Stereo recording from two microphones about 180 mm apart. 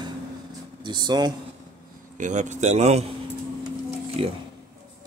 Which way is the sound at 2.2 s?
40° right (ahead or behind).